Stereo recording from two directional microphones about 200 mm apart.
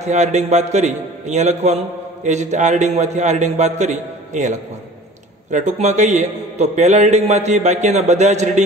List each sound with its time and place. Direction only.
0.0 s a man's voice: 35° right (ahead or behind)